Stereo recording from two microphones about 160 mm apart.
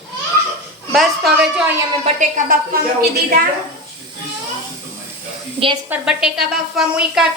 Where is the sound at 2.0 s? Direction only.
55° right (ahead or behind).